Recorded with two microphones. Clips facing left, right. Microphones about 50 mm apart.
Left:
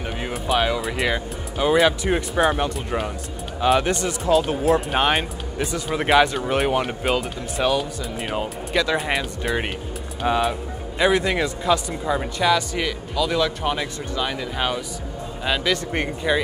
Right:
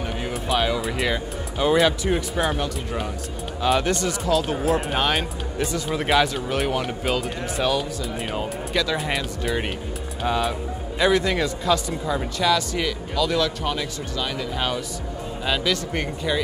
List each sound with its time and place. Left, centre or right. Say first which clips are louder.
0.3 s speech: left 2 dB; centre
2.5 s speech: left 3 dB; left
4.6 s speech: left 3 dB; centre
4.9 s speech: left 2 dB; centre
15.7 s speech: left 2 dB; left